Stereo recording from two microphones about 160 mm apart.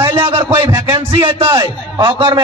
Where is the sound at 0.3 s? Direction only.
30° right (ahead or behind).